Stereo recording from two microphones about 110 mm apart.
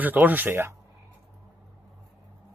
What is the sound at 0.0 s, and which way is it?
Speech, 15° right (ahead or behind).